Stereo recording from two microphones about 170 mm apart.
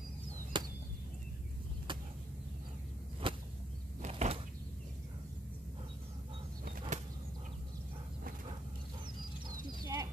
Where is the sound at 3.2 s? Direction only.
30° right (ahead or behind).